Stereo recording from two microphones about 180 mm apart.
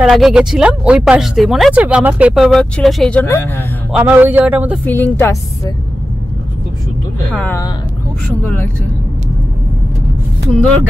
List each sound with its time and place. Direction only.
0.0 s speech: 5° right (ahead or behind)
3.9 s a man's voice: 10° right (ahead or behind)
4.8 s a woman's voice: 10° left (ahead or behind)
7.3 s a woman's voice: 10° left (ahead or behind)